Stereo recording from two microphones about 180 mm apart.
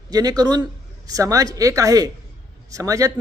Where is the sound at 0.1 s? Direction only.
20° right (ahead or behind).